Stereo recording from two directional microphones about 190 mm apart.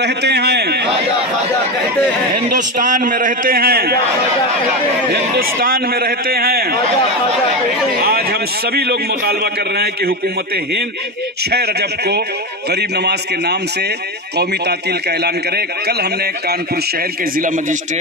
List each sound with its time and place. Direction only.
0.0 s a man's voice: 60° right (ahead or behind)
2.8 s a man's voice: 45° right (ahead or behind)
5.1 s a man's voice: 55° right (ahead or behind)
8.0 s a man's voice: 55° right (ahead or behind)
17.4 s a man's voice: 45° right (ahead or behind)